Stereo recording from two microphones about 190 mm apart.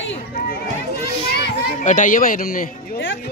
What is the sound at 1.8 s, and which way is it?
Speech, 40° left (ahead or behind).